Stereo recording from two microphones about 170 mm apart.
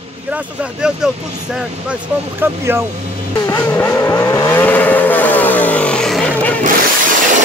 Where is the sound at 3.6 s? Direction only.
15° left (ahead or behind).